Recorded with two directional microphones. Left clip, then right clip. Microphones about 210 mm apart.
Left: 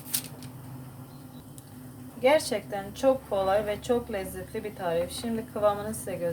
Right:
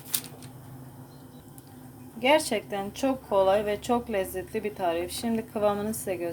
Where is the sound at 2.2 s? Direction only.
25° right (ahead or behind).